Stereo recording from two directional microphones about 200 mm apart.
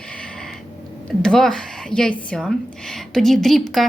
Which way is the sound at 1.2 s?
5° left (ahead or behind).